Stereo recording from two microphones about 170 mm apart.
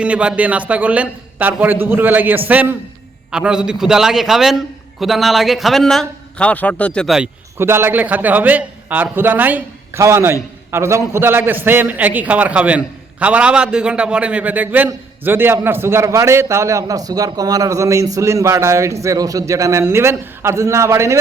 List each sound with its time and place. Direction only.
0.0 s a man's voice: 5° right (ahead or behind)
7.6 s a man's voice: 15° right (ahead or behind)